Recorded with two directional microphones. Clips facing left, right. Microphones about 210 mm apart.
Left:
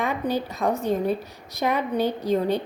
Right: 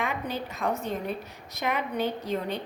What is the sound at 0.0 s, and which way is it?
A woman's voice, 35° left (ahead or behind).